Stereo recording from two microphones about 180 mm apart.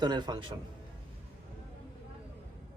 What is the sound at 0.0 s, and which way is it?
Speech, 25° right (ahead or behind).